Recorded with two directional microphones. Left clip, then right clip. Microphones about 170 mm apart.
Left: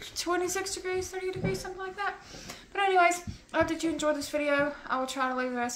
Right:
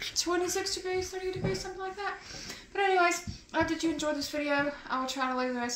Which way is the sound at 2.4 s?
35° left (ahead or behind).